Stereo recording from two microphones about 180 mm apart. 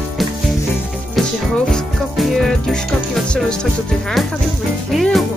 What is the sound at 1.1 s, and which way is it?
Music, 5° left (ahead or behind).